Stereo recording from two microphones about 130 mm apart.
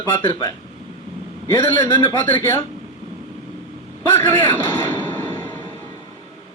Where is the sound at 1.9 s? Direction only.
20° left (ahead or behind).